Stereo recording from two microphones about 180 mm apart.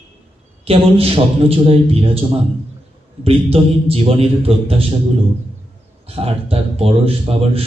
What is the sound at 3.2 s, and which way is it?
A man's voice, 30° right (ahead or behind).